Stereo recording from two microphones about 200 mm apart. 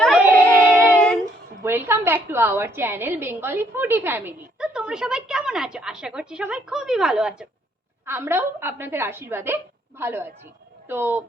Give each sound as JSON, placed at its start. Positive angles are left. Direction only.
{"t": 0.0, "sound": "a sound", "side_deg": 0}
{"t": 0.9, "sound": "child singing", "side_deg": 5}
{"t": 1.2, "sound": "a woman's voice", "side_deg": -10}